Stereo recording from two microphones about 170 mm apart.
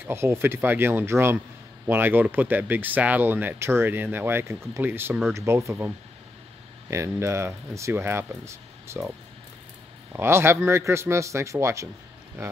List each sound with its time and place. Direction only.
0.0 s speech: 15° right (ahead or behind)
10.1 s speech: 15° right (ahead or behind)